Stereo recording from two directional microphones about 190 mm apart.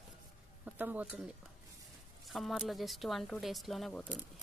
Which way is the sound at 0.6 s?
10° right (ahead or behind).